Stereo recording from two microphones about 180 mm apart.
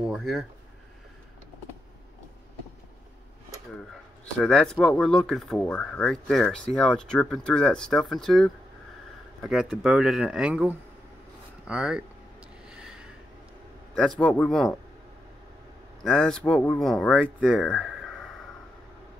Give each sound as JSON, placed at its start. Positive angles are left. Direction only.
{"t": 0.0, "sound": "speech", "side_deg": 0}
{"t": 4.4, "sound": "speech", "side_deg": 5}
{"t": 12.6, "sound": "gasp", "side_deg": -5}
{"t": 13.9, "sound": "speech", "side_deg": 5}
{"t": 16.0, "sound": "speech", "side_deg": 5}